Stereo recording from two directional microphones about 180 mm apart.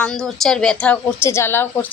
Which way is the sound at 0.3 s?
Centre (ahead or behind).